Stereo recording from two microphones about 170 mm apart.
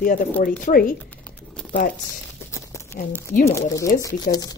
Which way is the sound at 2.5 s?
15° left (ahead or behind).